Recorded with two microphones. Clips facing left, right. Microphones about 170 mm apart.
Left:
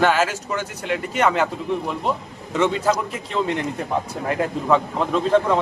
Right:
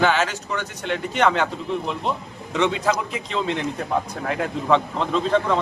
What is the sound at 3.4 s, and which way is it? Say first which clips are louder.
Speech: left 3 dB; 55° left (ahead or behind).